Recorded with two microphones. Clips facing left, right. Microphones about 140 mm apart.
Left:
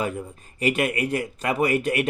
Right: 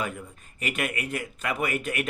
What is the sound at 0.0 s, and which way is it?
Speech, 30° left (ahead or behind).